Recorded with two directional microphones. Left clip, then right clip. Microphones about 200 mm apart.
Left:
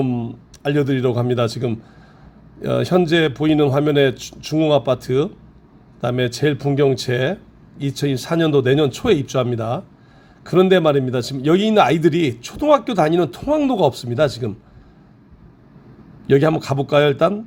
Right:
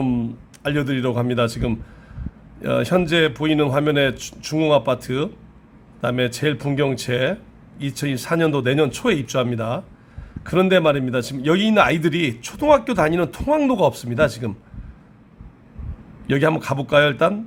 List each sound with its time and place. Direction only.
0.0 s a man's voice: centre (ahead or behind)
16.2 s a man's voice: 5° left (ahead or behind)